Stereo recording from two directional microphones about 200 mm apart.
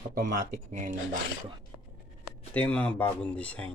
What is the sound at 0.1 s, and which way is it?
Speech, 45° right (ahead or behind).